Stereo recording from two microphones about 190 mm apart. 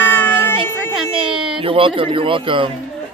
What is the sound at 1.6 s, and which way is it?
Speech, 30° right (ahead or behind).